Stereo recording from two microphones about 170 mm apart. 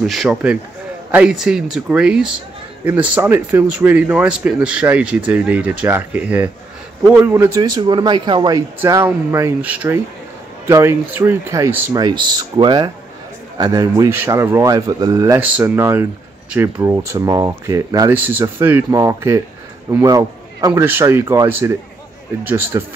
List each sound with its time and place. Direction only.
0.0 s speech: centre (ahead or behind)